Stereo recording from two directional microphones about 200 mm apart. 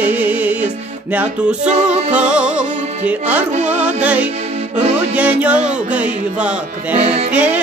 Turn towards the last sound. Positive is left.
turn(degrees=-5)  # may be behind; listen again after turning